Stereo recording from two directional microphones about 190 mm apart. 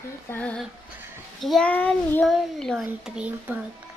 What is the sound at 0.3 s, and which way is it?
Female singing, 5° left (ahead or behind).